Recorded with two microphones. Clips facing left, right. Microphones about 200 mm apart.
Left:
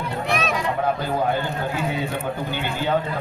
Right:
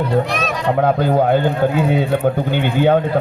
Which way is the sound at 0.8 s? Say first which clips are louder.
Right 11 dB; 60° right (ahead or behind).